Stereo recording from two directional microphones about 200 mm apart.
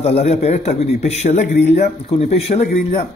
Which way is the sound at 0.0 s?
35° left (ahead or behind).